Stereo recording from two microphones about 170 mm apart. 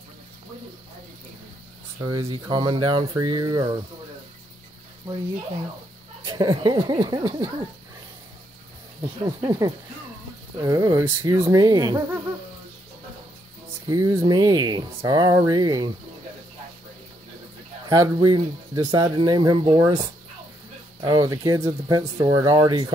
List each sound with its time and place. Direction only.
2.0 s speech: 20° right (ahead or behind)
6.2 s speech: 25° right (ahead or behind)
9.0 s speech: 25° right (ahead or behind)
13.8 s speech: 20° right (ahead or behind)
17.8 s speech: 20° right (ahead or behind)